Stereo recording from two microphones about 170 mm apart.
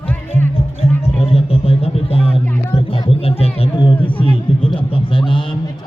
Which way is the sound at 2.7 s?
35° left (ahead or behind).